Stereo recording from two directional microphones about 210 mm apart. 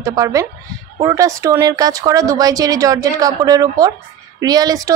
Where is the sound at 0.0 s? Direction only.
15° right (ahead or behind).